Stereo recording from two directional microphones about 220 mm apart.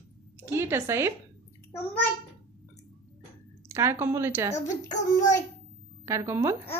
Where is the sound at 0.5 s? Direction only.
10° right (ahead or behind).